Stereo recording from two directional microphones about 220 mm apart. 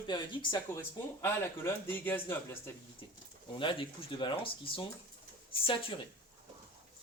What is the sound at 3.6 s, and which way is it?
Speech, 25° left (ahead or behind).